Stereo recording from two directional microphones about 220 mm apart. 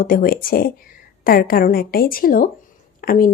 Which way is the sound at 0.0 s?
40° left (ahead or behind).